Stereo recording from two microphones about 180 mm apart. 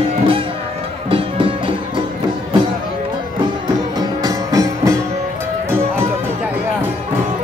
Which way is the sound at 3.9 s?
20° right (ahead or behind).